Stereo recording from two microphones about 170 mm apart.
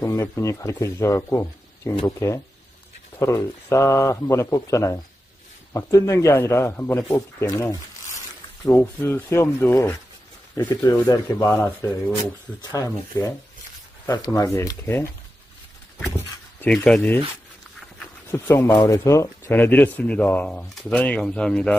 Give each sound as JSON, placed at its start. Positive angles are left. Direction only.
{"t": 0.0, "sound": "speech", "side_deg": 20}
{"t": 16.1, "sound": "speech", "side_deg": 10}
{"t": 18.3, "sound": "speech", "side_deg": 15}